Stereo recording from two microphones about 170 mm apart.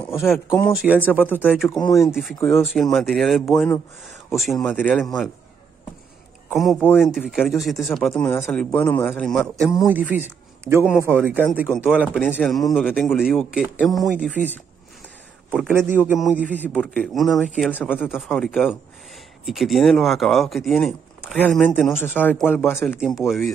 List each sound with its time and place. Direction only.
0.0 s a sound: 15° left (ahead or behind)
0.3 s speech: centre (ahead or behind)
1.2 s a man's voice: 10° left (ahead or behind)
1.7 s speech: 20° left (ahead or behind)
2.5 s speech: centre (ahead or behind)
6.5 s a man's voice: centre (ahead or behind)
9.8 s a man's voice: 10° right (ahead or behind)
15.5 s a man's voice: 10° right (ahead or behind)
16.5 s a man's voice: 10° left (ahead or behind)
18.0 s speech: centre (ahead or behind)
22.1 s a man's voice: 10° left (ahead or behind)
22.9 s speech: centre (ahead or behind)